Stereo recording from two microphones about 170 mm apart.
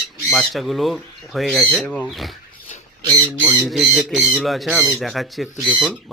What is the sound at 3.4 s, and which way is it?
Speech, 5° left (ahead or behind).